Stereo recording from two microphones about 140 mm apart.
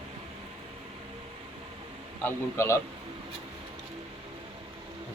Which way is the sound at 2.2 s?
20° left (ahead or behind).